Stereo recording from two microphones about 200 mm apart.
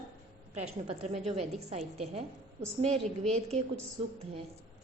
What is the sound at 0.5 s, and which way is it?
A woman's voice, 30° right (ahead or behind).